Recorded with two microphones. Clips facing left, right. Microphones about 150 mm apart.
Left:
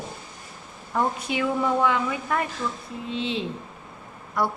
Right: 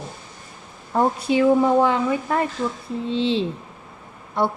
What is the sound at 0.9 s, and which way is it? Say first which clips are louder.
Speech: right 6 dB; 35° right (ahead or behind).